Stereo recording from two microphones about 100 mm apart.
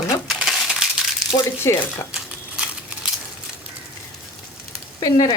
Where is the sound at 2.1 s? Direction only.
10° right (ahead or behind).